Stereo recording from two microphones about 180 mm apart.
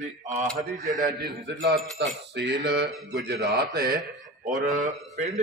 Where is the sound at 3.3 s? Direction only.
60° right (ahead or behind).